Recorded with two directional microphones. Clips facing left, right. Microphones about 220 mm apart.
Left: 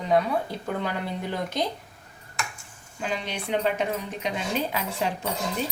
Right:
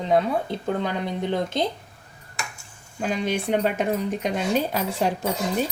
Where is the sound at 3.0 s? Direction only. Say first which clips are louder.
Right 6 dB; 45° right (ahead or behind).